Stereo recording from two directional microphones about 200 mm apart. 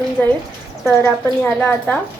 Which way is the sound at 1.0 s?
10° left (ahead or behind).